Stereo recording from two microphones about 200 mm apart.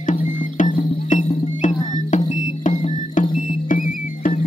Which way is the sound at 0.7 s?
40° left (ahead or behind).